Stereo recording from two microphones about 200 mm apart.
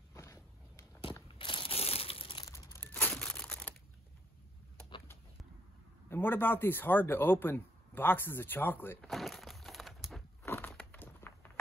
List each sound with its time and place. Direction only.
0.1 s a sound: 15° left (ahead or behind)
1.1 s crumpling: 25° left (ahead or behind)
2.5 s crumpling: 15° left (ahead or behind)
6.0 s speech: 10° left (ahead or behind)
9.1 s a sound: centre (ahead or behind)
10.4 s crumpling: 10° left (ahead or behind)